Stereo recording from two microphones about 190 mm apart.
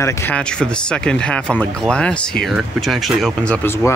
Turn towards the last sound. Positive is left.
turn(degrees=10)  # may be behind; listen again after turning